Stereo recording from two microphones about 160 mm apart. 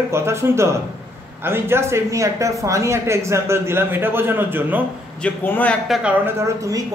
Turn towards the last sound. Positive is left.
turn(degrees=-15)  # may be behind; listen again after turning